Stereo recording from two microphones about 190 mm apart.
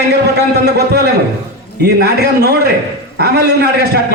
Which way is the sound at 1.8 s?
60° right (ahead or behind).